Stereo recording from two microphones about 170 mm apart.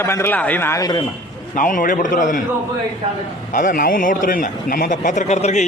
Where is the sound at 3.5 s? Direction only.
50° left (ahead or behind).